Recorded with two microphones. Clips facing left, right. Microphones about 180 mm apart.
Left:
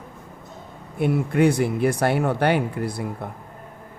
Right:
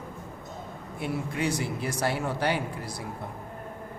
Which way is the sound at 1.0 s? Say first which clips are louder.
Left 11 dB; 55° left (ahead or behind).